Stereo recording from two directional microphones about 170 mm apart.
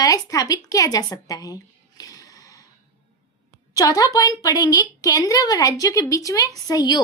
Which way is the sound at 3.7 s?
20° left (ahead or behind).